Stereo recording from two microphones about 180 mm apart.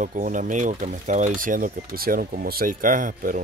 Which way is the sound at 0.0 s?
45° right (ahead or behind).